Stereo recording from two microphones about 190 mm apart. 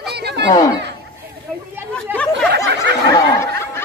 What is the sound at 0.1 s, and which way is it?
Chatter, 60° right (ahead or behind).